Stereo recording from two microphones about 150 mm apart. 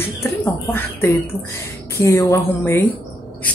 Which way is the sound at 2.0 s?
20° left (ahead or behind).